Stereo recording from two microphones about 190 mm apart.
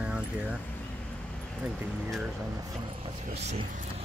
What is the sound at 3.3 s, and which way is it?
Speech, 35° right (ahead or behind).